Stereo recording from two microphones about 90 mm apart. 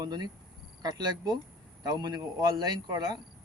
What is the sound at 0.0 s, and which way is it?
A man's voice, 50° right (ahead or behind).